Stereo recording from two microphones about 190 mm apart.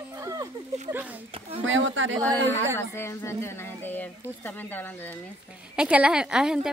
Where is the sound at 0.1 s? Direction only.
20° right (ahead or behind).